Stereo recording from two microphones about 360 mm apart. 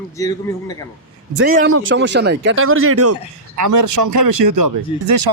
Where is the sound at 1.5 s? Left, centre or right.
Right.